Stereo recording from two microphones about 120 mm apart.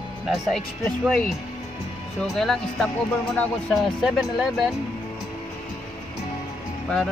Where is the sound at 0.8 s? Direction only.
5° left (ahead or behind).